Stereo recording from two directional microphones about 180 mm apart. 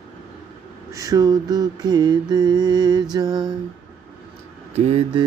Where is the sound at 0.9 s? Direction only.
20° right (ahead or behind).